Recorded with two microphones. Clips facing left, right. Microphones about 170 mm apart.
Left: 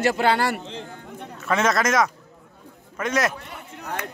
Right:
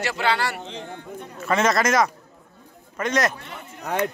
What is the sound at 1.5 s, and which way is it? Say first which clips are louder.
Speech: right 1 dB; centre (ahead or behind).